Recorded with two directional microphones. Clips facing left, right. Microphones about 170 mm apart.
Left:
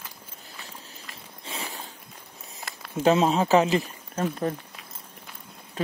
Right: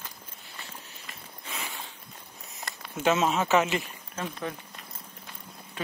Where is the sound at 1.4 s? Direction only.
30° left (ahead or behind).